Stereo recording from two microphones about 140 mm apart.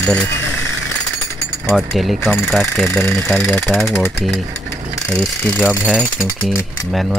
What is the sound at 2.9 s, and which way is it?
Speech, 15° left (ahead or behind).